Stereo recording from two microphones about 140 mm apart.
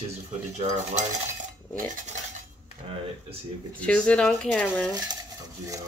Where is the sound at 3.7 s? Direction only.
10° left (ahead or behind).